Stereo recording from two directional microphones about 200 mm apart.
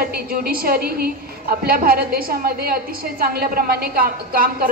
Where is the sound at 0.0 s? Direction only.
50° right (ahead or behind).